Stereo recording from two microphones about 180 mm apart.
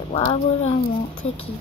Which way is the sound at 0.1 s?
35° left (ahead or behind).